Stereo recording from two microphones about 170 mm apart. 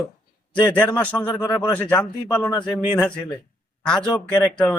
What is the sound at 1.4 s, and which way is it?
Speech, 25° left (ahead or behind).